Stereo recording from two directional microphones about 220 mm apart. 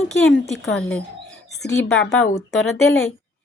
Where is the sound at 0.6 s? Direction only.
Centre (ahead or behind).